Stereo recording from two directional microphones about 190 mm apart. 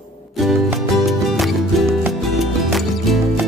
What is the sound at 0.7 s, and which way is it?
Music, centre (ahead or behind).